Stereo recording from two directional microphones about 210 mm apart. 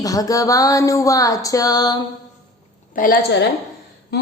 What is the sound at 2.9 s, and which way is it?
A woman's voice, 40° left (ahead or behind).